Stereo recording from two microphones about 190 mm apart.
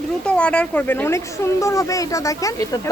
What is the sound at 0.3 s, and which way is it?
Speech, 5° left (ahead or behind).